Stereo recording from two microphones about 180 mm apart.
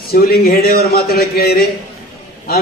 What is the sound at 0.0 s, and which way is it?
A man's voice, 60° left (ahead or behind).